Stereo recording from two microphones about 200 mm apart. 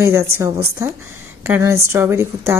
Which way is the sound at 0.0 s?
15° right (ahead or behind).